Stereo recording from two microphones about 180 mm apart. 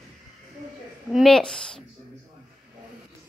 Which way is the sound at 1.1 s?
Centre (ahead or behind).